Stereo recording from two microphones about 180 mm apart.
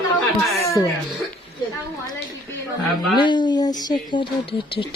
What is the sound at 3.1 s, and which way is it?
Speech, 25° left (ahead or behind).